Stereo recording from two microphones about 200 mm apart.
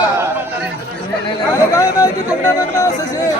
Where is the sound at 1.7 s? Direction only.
15° left (ahead or behind).